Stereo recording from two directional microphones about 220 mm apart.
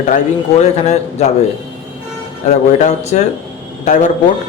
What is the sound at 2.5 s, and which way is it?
Speech, 30° left (ahead or behind).